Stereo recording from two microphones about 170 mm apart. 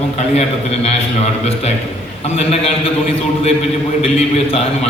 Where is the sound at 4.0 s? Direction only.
35° left (ahead or behind).